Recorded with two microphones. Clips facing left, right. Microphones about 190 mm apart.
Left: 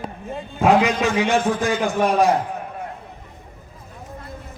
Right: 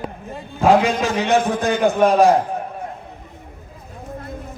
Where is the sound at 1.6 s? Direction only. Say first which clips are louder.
Right 4 dB; 60° right (ahead or behind).